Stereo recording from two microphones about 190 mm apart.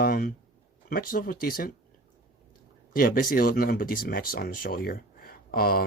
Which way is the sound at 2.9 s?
50° left (ahead or behind).